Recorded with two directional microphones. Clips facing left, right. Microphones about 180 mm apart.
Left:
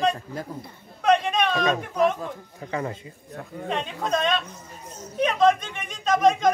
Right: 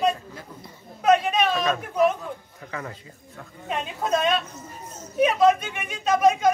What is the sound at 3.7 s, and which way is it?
Speech, 5° right (ahead or behind).